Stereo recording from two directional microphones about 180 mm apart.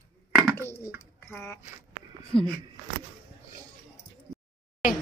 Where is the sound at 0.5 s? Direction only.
15° left (ahead or behind).